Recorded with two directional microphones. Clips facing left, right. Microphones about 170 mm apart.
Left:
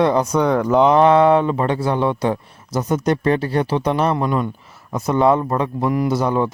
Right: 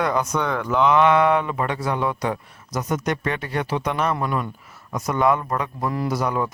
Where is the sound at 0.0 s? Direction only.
30° left (ahead or behind).